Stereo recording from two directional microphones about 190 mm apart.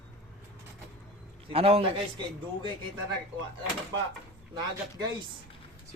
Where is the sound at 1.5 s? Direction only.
30° right (ahead or behind).